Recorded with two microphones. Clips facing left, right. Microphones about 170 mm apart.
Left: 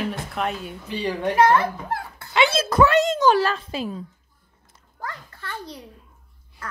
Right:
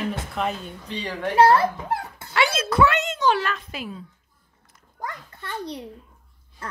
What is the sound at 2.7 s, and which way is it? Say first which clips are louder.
A child's voice: left 3 dB; 40° left (ahead or behind).